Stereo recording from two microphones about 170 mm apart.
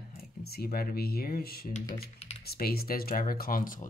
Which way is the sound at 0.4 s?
65° left (ahead or behind).